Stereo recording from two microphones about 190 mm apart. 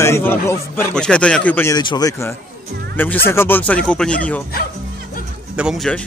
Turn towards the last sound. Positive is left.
turn(degrees=0)  # may be behind; listen again after turning